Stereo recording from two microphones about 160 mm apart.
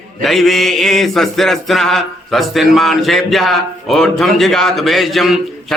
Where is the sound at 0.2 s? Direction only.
Centre (ahead or behind).